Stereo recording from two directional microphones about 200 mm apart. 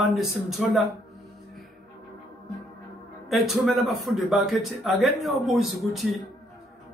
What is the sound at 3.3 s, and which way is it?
A man's voice, centre (ahead or behind).